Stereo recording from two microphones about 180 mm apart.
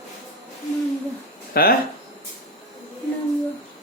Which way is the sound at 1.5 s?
55° left (ahead or behind).